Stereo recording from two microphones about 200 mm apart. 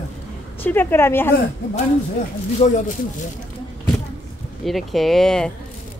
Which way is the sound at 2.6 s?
30° left (ahead or behind).